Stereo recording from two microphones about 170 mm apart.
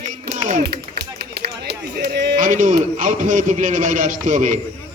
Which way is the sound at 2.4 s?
50° right (ahead or behind).